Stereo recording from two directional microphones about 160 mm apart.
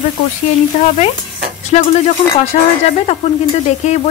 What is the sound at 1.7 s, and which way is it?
Speech, 40° left (ahead or behind).